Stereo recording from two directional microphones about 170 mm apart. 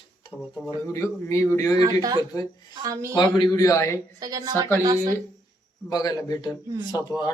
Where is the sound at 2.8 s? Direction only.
20° right (ahead or behind).